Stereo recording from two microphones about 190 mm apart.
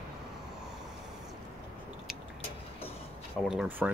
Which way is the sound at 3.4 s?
5° right (ahead or behind).